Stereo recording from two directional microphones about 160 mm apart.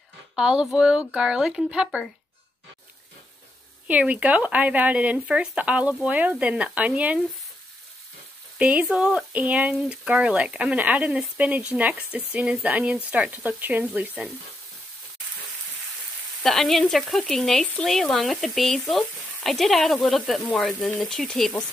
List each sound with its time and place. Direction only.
0.4 s speech: 5° right (ahead or behind)
3.8 s speech: 10° right (ahead or behind)
8.5 s speech: 10° right (ahead or behind)
16.4 s speech: centre (ahead or behind)